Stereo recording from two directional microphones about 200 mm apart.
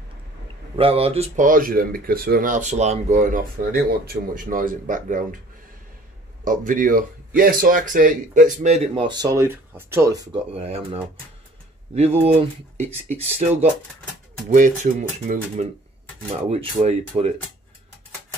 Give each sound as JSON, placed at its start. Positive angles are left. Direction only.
{"t": 0.7, "sound": "speech", "side_deg": -30}
{"t": 6.4, "sound": "speech", "side_deg": -40}
{"t": 10.5, "sound": "speech", "side_deg": -30}